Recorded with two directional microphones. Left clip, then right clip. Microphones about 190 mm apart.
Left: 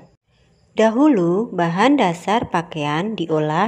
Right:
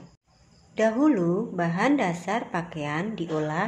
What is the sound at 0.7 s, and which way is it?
A woman's voice, 40° left (ahead or behind).